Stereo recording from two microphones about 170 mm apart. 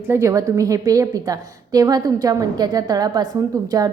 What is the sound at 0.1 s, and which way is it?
A woman's voice, 15° right (ahead or behind).